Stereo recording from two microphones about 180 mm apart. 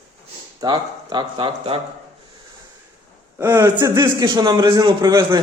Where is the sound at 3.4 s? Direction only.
20° right (ahead or behind).